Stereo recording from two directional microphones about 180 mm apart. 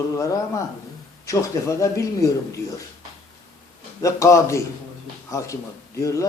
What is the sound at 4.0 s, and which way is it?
Speech, 15° left (ahead or behind).